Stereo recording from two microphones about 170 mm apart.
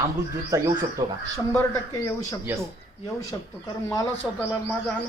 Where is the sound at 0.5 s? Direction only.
20° right (ahead or behind).